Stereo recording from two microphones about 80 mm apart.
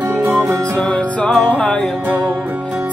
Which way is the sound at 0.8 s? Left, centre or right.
Centre.